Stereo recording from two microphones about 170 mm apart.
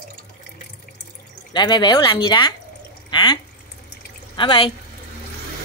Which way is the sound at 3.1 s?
25° left (ahead or behind).